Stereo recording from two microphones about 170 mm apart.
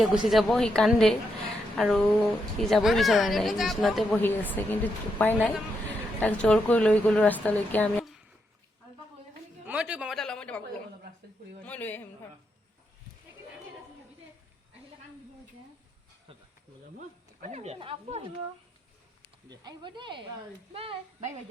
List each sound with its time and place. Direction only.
0.0 s speech: centre (ahead or behind)
4.1 s a woman's voice: 10° left (ahead or behind)
9.6 s a sound: 5° right (ahead or behind)
11.6 s a woman's voice: 10° left (ahead or behind)
17.4 s speech: 40° right (ahead or behind)
19.5 s speech: 25° right (ahead or behind)